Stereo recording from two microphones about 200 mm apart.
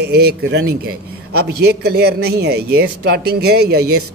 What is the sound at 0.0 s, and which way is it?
A man's voice, 55° right (ahead or behind).